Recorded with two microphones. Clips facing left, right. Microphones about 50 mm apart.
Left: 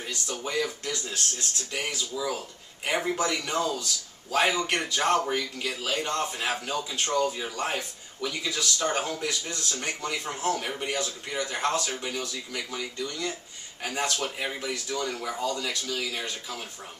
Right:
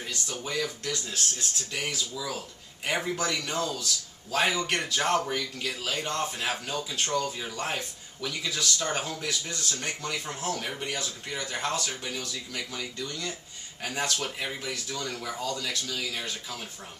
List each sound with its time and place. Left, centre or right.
0.5 s speech: centre